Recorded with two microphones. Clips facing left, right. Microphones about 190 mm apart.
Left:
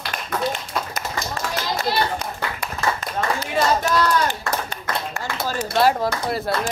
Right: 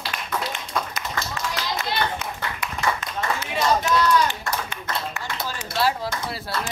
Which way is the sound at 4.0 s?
50° left (ahead or behind).